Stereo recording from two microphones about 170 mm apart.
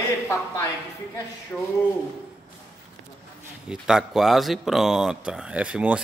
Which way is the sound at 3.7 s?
5° right (ahead or behind).